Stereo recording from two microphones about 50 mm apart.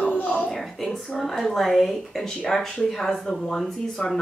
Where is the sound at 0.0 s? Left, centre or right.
Left.